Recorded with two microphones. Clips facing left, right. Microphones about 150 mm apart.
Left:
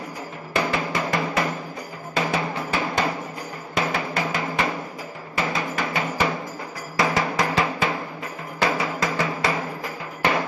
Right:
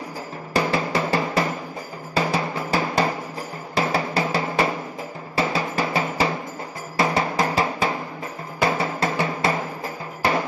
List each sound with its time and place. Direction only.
0.5 s music: 35° right (ahead or behind)
9.0 s drum: 30° right (ahead or behind)
10.2 s music: 35° right (ahead or behind)